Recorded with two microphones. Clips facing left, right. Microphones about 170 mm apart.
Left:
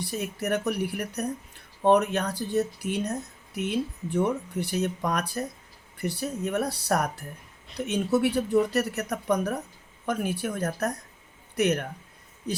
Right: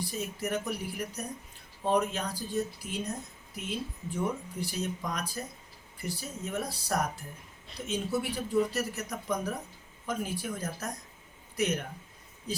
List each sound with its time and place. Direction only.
0.0 s speech: 70° left (ahead or behind)